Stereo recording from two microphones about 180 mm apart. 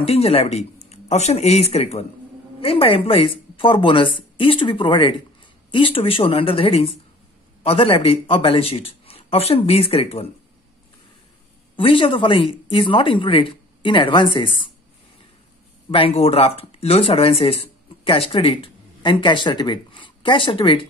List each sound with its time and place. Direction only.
0.0 s a man's voice: 35° left (ahead or behind)
11.7 s speech: 30° left (ahead or behind)
15.9 s a man's voice: 30° left (ahead or behind)